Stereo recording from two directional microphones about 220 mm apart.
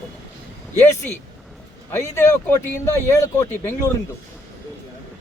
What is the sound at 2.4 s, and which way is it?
A man's voice, 15° left (ahead or behind).